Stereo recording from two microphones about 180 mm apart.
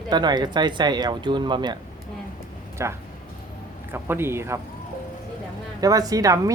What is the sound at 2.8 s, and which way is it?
A man's voice, 15° right (ahead or behind).